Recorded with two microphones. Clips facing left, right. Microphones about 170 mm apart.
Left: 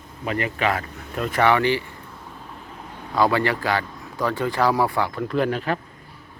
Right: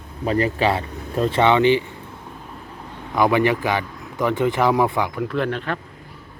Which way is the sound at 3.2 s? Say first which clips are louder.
Right 3 dB; 20° right (ahead or behind).